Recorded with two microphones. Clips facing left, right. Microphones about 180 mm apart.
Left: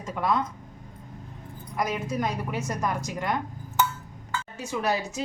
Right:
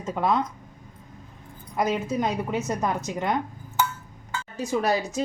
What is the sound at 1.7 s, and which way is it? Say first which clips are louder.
Speech: right 3 dB; 25° right (ahead or behind).